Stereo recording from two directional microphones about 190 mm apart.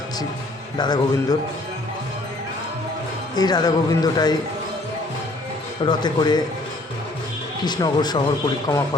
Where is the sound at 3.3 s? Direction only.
20° left (ahead or behind).